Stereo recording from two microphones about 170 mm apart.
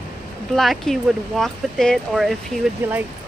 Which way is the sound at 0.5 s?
Centre (ahead or behind).